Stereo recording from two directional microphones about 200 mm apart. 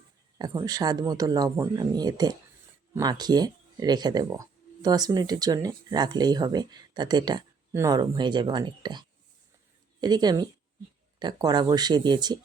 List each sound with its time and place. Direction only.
0.3 s speech: 20° right (ahead or behind)